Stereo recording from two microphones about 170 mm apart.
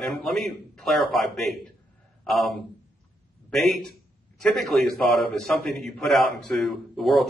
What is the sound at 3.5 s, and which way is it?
Speech, centre (ahead or behind).